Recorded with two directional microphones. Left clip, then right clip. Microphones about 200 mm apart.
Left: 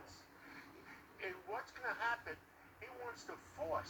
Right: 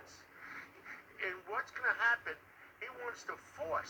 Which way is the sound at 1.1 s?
20° right (ahead or behind).